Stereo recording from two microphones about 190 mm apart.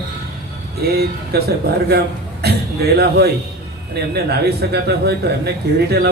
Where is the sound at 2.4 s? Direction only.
60° right (ahead or behind).